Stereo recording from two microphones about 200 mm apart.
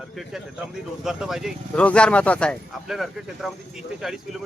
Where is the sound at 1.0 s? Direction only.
Centre (ahead or behind).